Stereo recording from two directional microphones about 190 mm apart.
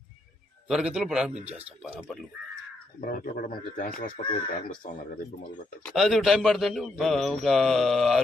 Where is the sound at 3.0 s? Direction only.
50° left (ahead or behind).